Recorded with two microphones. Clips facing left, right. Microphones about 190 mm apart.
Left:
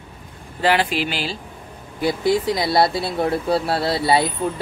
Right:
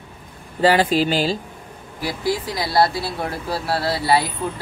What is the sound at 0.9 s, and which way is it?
Speech, 40° right (ahead or behind).